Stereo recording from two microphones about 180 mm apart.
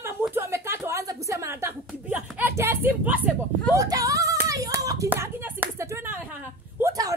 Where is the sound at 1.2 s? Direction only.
15° right (ahead or behind).